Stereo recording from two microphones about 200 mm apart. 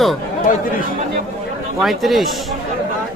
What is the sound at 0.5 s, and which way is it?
Speech, 40° left (ahead or behind).